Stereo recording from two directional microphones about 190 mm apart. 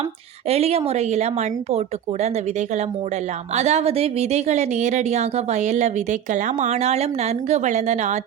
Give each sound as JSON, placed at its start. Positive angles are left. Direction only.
{"t": 0.4, "sound": "speech", "side_deg": -30}
{"t": 3.5, "sound": "speech", "side_deg": -35}